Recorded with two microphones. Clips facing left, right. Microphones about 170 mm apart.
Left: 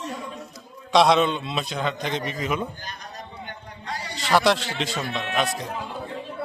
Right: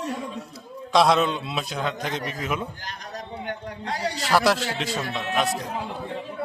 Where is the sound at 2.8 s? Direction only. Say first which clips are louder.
Right 2 dB; 90° right.